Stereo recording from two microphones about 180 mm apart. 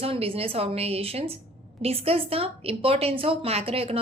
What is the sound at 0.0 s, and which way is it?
A woman's voice, 30° right (ahead or behind).